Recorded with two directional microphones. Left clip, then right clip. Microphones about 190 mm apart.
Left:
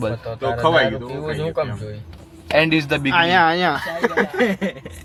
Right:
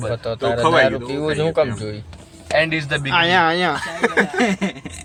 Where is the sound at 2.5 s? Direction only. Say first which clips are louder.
Left 1 dB; 40° left (ahead or behind).